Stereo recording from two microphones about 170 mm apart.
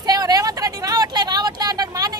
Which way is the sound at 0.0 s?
20° right (ahead or behind).